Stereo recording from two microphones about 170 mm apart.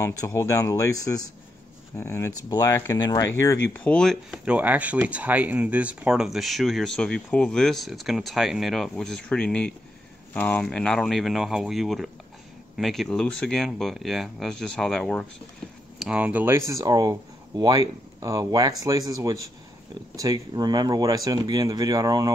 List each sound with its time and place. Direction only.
0.0 s speech: 20° left (ahead or behind)
16.0 s speech: 5° right (ahead or behind)